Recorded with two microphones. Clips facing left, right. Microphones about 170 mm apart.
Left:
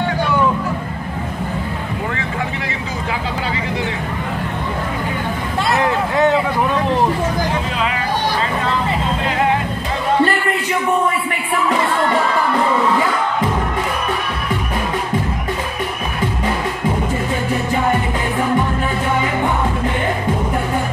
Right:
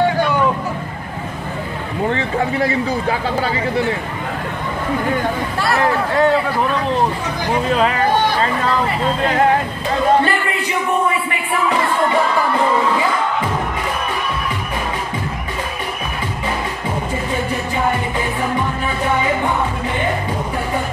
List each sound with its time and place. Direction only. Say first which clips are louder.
2.0 s speech: right 8 dB; 35° right (ahead or behind)
5.6 s a sound: left 1 dB; 20° left (ahead or behind)
7.7 s speech: right 5 dB; 45° right (ahead or behind)